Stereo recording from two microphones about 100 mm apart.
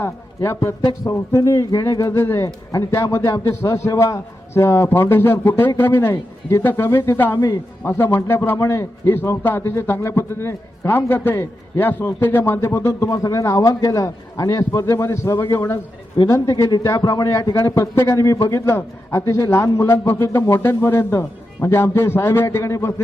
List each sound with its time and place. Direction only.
0.0 s a man's voice: 25° left (ahead or behind)
7.3 s a man's voice: 40° left (ahead or behind)
7.9 s a man's voice: 25° left (ahead or behind)